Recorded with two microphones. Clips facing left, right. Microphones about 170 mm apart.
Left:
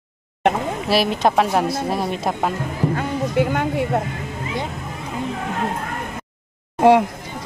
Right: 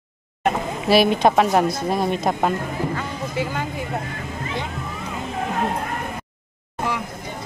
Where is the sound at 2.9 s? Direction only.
55° left (ahead or behind).